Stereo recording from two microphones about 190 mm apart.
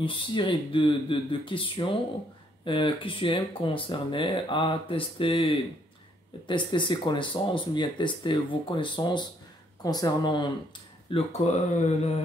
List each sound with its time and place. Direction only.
0.0 s speech: 25° left (ahead or behind)